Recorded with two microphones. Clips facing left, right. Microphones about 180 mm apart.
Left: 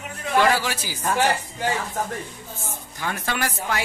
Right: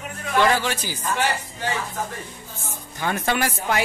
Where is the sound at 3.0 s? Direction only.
20° right (ahead or behind).